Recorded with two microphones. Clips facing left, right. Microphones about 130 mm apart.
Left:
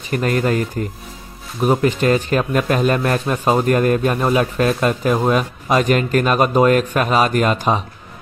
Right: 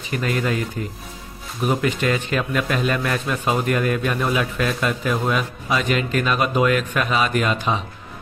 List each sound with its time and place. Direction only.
0.1 s a man's voice: 45° left (ahead or behind)